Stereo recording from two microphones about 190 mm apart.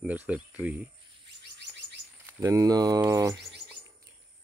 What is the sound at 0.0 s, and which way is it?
Speech, 10° right (ahead or behind).